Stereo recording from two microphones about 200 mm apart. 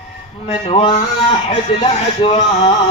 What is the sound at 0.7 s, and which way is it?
Speech, 30° left (ahead or behind).